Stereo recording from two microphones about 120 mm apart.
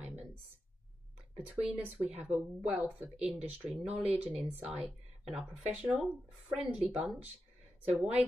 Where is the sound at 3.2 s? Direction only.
15° right (ahead or behind).